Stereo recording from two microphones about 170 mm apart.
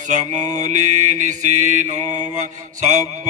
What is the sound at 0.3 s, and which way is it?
Mantra, 45° right (ahead or behind).